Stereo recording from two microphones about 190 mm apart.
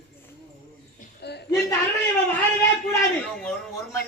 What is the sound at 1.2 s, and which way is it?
Speech, 60° left (ahead or behind).